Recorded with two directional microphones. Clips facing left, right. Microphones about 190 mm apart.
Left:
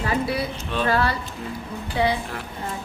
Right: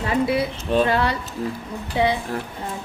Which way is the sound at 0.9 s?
20° right (ahead or behind).